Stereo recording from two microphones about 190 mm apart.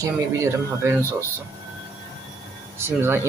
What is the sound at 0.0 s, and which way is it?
Speech, 15° right (ahead or behind).